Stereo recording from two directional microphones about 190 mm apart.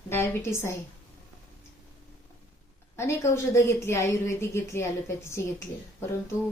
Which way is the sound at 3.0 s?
15° left (ahead or behind).